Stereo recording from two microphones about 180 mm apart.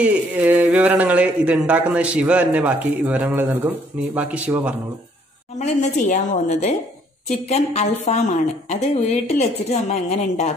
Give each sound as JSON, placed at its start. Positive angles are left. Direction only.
{"t": 0.0, "sound": "speech", "side_deg": -5}
{"t": 5.6, "sound": "speech", "side_deg": 40}